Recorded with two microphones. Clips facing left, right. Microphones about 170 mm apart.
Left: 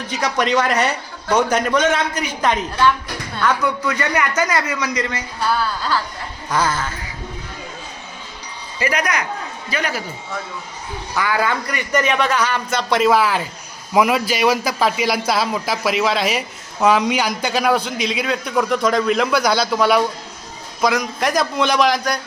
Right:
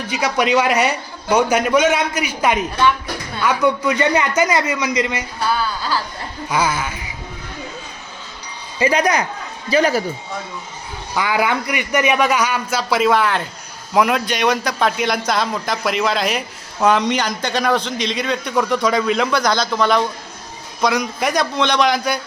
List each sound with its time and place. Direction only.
0.1 s a man's voice: 5° right (ahead or behind)
3.6 s a man's voice: 20° right (ahead or behind)
5.5 s a man's voice: centre (ahead or behind)
8.8 s a man's voice: 30° right (ahead or behind)
11.1 s a man's voice: 15° right (ahead or behind)